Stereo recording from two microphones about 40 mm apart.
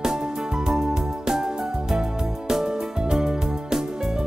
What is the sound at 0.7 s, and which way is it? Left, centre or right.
Music, centre.